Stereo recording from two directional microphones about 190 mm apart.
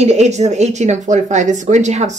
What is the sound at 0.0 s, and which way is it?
A woman's voice, 35° right (ahead or behind).